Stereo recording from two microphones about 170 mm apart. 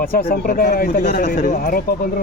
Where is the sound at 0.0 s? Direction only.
60° left (ahead or behind).